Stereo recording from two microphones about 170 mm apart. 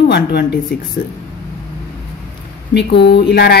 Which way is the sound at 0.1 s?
75° left (ahead or behind).